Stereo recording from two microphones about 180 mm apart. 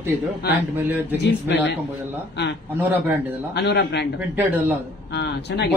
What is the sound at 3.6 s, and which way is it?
Speech, 70° left (ahead or behind).